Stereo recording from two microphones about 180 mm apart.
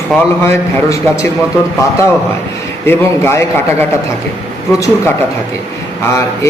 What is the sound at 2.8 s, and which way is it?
A man's voice, 15° left (ahead or behind).